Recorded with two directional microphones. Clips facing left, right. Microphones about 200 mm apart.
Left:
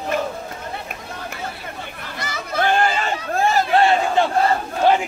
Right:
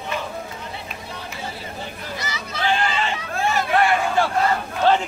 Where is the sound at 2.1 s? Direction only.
50° left (ahead or behind); by 4.3 s 25° left (ahead or behind).